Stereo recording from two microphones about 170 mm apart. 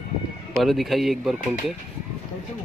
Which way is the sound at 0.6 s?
Centre (ahead or behind).